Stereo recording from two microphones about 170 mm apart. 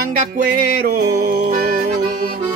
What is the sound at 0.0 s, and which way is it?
Music, 55° right (ahead or behind).